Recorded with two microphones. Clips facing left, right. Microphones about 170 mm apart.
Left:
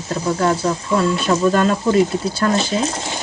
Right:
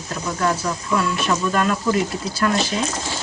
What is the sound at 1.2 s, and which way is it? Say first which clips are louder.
Speech: left 5 dB; 30° left (ahead or behind).